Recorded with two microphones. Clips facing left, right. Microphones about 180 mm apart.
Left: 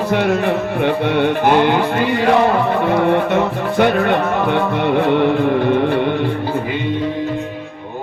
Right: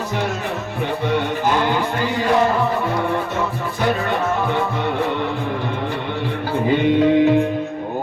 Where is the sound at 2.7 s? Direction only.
65° left (ahead or behind).